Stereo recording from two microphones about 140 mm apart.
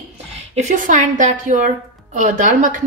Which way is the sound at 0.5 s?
60° right (ahead or behind).